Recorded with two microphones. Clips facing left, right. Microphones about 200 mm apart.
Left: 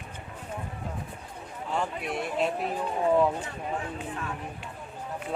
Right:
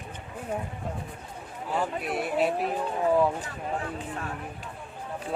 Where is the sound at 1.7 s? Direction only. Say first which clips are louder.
Right 2 dB; 5° right (ahead or behind).